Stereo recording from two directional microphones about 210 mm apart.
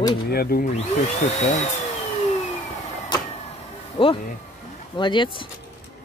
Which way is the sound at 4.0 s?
25° left (ahead or behind).